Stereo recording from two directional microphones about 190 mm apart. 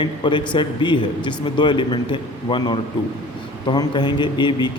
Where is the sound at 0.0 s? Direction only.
25° left (ahead or behind).